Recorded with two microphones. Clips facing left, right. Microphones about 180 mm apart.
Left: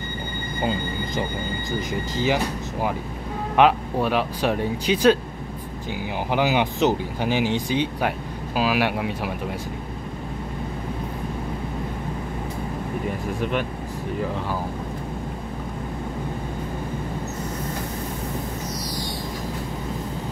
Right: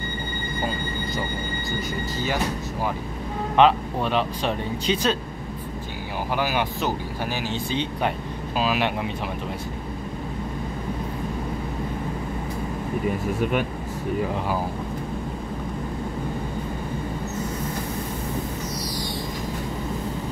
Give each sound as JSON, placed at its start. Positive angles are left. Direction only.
{"t": 3.5, "sound": "speech", "side_deg": 10}
{"t": 6.3, "sound": "speech", "side_deg": 20}